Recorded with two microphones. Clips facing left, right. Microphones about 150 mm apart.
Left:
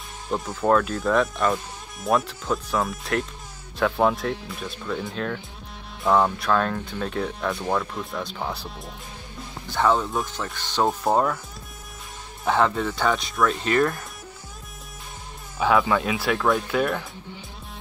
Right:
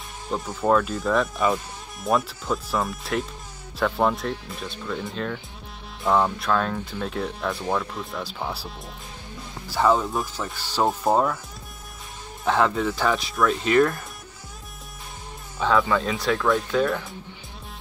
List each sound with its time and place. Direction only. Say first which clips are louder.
0.6 s speech: even; centre (ahead or behind)
12.4 s speech: even; centre (ahead or behind)
15.6 s speech: left 1 dB; 10° left (ahead or behind)